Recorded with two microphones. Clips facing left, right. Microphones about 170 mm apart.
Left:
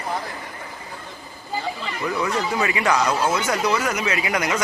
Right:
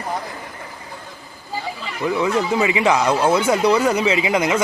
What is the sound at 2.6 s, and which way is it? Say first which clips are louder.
Speech: right 2 dB; 20° right (ahead or behind).